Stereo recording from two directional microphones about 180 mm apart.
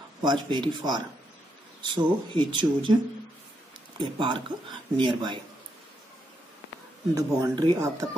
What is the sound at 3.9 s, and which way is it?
Speech, 25° right (ahead or behind).